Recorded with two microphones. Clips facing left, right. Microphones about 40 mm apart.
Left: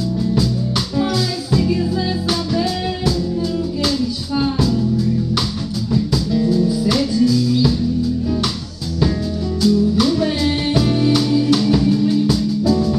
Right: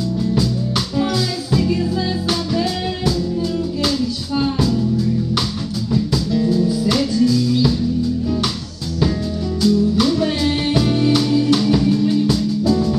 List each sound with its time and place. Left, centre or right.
0.7 s music: centre
6.4 s music: centre
9.7 s music: centre